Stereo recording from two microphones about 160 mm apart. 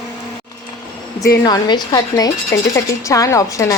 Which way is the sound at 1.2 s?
20° left (ahead or behind).